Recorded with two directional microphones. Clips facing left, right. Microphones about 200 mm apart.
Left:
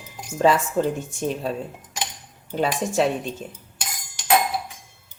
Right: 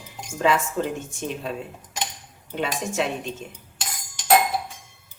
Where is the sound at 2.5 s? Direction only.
35° left (ahead or behind).